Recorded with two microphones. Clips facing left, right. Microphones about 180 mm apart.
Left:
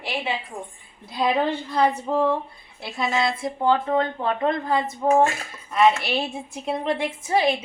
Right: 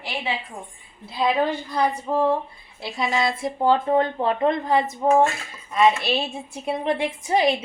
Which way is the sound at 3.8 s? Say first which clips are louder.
Right 2 dB; 30° right (ahead or behind).